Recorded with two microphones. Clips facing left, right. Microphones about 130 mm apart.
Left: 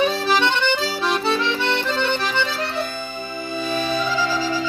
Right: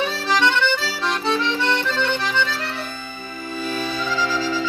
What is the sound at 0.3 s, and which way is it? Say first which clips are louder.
Accordion: even; 15° left (ahead or behind).